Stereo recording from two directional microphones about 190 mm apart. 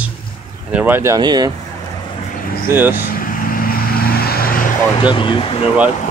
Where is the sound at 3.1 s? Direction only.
45° left (ahead or behind).